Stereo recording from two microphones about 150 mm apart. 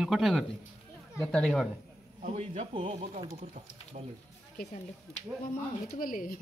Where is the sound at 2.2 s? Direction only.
45° right (ahead or behind).